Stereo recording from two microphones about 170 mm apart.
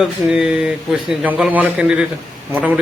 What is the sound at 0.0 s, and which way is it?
Speech, 5° right (ahead or behind).